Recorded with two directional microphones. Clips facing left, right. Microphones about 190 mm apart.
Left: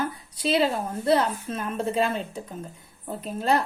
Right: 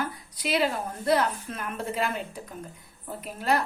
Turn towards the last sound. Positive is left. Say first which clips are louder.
# left 3 dB
turn(degrees=30)  # may be behind; listen again after turning